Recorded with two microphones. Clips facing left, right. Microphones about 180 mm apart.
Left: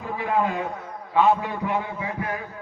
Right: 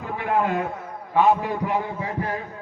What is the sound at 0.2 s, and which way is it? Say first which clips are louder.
Speech: right 1 dB; centre (ahead or behind).